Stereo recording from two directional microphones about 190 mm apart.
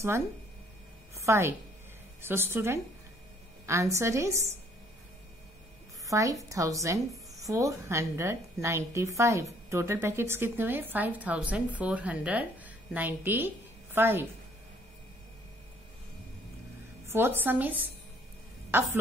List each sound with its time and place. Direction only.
1.1 s a sound: 15° right (ahead or behind)
2.2 s a woman's voice: 10° right (ahead or behind)
6.0 s a woman's voice: 15° right (ahead or behind)
17.1 s a woman's voice: 10° right (ahead or behind)